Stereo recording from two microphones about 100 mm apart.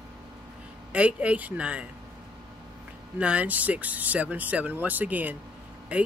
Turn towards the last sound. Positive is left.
turn(degrees=-15)  # may be behind; listen again after turning